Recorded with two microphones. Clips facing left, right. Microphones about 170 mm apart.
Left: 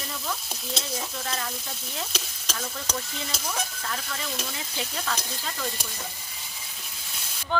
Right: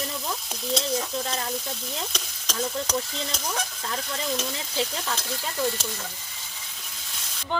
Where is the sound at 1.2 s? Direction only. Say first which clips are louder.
Right 2 dB; 30° right (ahead or behind).